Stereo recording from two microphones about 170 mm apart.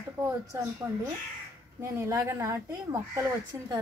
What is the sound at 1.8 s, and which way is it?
Speech, 15° right (ahead or behind).